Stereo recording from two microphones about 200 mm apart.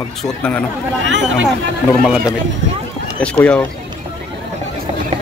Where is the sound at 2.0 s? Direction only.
5° right (ahead or behind).